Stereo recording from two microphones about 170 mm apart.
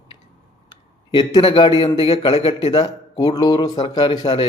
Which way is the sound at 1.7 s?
30° left (ahead or behind).